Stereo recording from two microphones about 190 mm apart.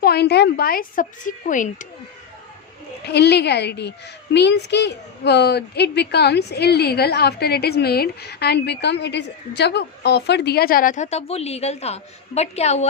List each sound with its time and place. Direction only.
0.0 s a woman's voice: 55° left (ahead or behind)
3.1 s a woman's voice: 60° left (ahead or behind); by 12.9 s 35° left (ahead or behind)